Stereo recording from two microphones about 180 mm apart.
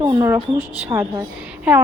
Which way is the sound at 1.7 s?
5° right (ahead or behind).